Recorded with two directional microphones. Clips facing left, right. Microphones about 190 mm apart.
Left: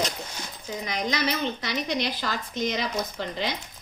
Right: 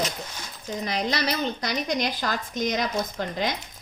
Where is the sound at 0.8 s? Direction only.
35° right (ahead or behind).